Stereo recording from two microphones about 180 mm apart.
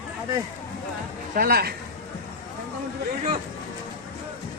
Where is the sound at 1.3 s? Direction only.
55° right (ahead or behind).